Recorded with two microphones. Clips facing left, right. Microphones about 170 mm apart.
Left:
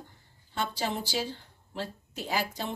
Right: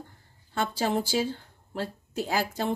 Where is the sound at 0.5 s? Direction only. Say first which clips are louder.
Right 5 dB; 50° right (ahead or behind).